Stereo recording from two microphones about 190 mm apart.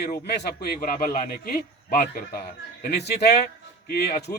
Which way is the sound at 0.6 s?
50° left (ahead or behind).